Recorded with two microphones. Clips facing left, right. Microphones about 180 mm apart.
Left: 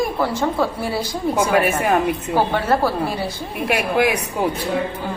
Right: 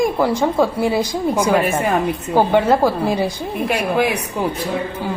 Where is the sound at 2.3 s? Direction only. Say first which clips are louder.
Right 6 dB; 15° right (ahead or behind).